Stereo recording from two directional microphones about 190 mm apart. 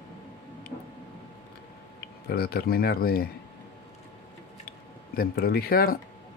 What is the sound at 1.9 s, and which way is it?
Speech, 55° left (ahead or behind).